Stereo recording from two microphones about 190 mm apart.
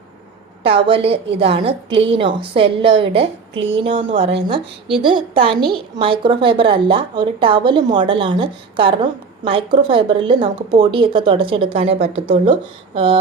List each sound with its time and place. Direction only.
0.6 s a woman's voice: 30° right (ahead or behind)